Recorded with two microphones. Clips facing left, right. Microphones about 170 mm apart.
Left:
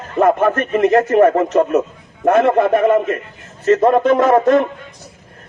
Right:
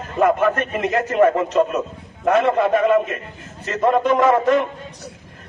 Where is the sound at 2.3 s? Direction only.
50° left (ahead or behind).